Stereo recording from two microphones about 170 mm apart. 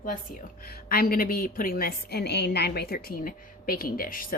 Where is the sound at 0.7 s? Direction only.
60° left (ahead or behind).